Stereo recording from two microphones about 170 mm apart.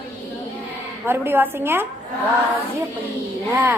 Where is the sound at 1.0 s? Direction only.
10° right (ahead or behind).